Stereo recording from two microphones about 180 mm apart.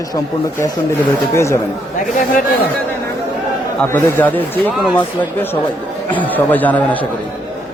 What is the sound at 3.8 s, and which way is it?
Speech, 10° left (ahead or behind).